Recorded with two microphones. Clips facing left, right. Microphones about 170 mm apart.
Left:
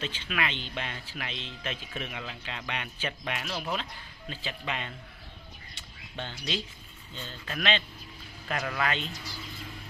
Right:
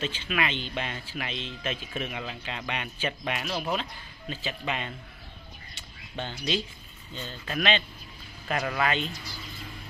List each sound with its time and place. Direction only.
0.0 s a man's voice: 10° right (ahead or behind)
6.1 s a man's voice: 15° right (ahead or behind)